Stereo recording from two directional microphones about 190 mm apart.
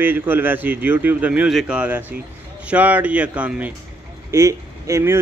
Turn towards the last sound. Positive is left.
turn(degrees=-15)  # may be behind; listen again after turning